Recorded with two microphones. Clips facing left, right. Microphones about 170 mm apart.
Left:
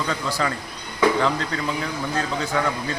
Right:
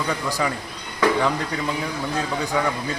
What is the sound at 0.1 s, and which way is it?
Speech, 15° right (ahead or behind).